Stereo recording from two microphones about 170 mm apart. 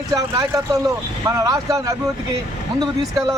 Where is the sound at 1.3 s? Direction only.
20° right (ahead or behind).